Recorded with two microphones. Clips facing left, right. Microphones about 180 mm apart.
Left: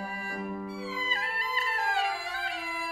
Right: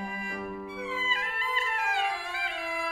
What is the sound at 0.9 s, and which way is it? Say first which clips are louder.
Music: right 1 dB; 40° left (ahead or behind).